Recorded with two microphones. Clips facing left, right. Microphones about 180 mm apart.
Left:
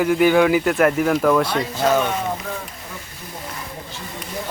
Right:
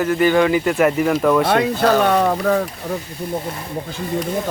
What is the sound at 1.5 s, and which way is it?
Speech, 65° right (ahead or behind).